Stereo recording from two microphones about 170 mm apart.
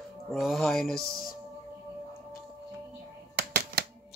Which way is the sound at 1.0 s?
60° left (ahead or behind).